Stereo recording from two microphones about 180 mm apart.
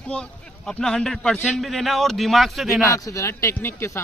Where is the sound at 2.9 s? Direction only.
15° left (ahead or behind).